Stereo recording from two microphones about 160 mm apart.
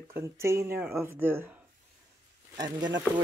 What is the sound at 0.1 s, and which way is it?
Speech, 15° right (ahead or behind).